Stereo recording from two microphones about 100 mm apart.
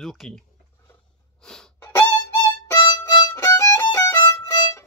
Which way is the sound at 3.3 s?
25° left (ahead or behind).